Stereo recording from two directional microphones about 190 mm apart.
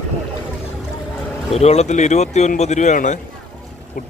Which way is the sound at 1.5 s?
35° left (ahead or behind).